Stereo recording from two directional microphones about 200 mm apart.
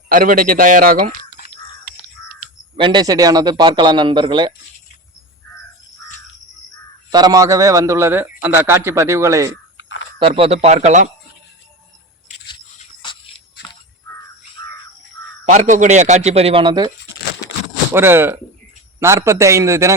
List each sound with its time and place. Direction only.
0.1 s a man's voice: 45° right (ahead or behind)
2.7 s speech: 25° right (ahead or behind)
7.1 s a man's voice: 20° right (ahead or behind)
9.7 s a sound: 70° left (ahead or behind)
10.2 s speech: 25° right (ahead or behind)
13.0 s a sound: 25° left (ahead or behind)
14.6 s a sound: 20° left (ahead or behind)
15.4 s speech: 40° right (ahead or behind); by 16.9 s 20° right (ahead or behind)
17.9 s a man's voice: 10° right (ahead or behind)